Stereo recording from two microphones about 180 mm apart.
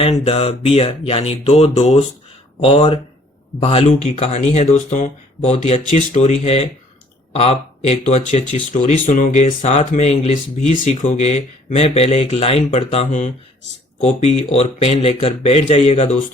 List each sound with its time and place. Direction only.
0.0 s speech: 35° left (ahead or behind)